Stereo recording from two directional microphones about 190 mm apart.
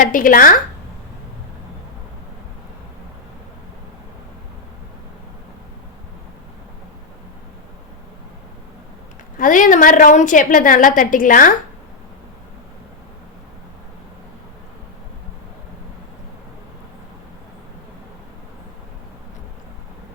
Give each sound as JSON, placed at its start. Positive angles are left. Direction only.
{"t": 0.0, "sound": "a woman's voice", "side_deg": 45}
{"t": 9.4, "sound": "a woman's voice", "side_deg": 45}